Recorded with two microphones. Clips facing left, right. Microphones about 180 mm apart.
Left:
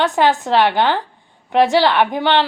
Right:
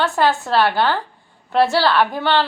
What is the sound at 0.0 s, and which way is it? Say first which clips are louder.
A woman's voice: left 2 dB; 15° left (ahead or behind).